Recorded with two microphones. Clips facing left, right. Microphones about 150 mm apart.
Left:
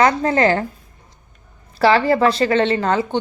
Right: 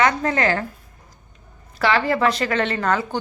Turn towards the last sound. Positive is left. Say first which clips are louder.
# left 4 dB
turn(degrees=25)  # may be behind; listen again after turning